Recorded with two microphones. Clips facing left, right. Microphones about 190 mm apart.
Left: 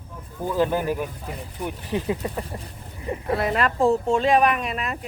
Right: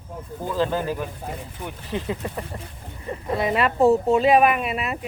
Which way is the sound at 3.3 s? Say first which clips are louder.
Right 1 dB; centre (ahead or behind).